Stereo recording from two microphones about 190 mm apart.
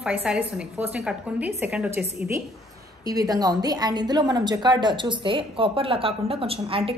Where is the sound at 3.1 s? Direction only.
20° right (ahead or behind).